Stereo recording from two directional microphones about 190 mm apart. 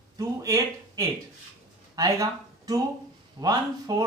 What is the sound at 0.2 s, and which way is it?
Speech, 15° right (ahead or behind).